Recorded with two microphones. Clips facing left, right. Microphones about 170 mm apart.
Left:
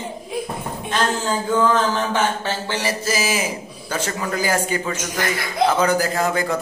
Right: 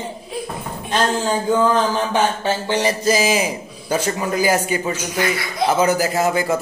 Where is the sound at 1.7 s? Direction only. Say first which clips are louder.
Right 2 dB; 15° right (ahead or behind).